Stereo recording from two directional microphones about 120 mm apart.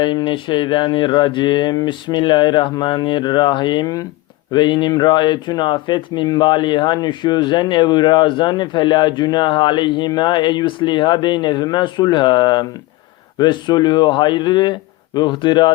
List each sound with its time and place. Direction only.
0.0 s speech: 40° left (ahead or behind)